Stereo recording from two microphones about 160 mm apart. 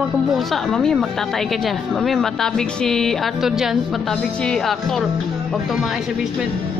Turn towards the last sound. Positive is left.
turn(degrees=0)  # may be behind; listen again after turning